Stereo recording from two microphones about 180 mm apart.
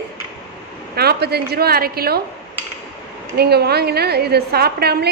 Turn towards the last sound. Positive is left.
turn(degrees=-65)  # may be behind; listen again after turning